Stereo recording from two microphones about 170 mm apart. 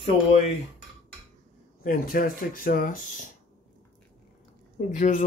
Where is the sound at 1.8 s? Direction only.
55° left (ahead or behind).